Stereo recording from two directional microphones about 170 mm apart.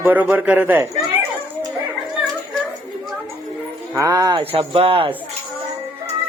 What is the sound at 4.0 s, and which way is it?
Speech, 20° right (ahead or behind).